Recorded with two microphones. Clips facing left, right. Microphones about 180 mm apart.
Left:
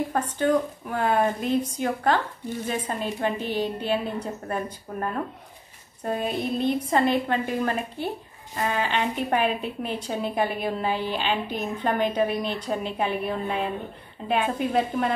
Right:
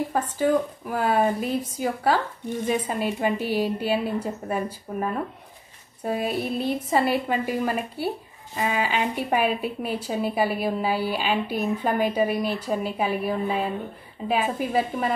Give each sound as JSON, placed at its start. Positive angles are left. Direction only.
{"t": 0.4, "sound": "a woman's voice", "side_deg": -5}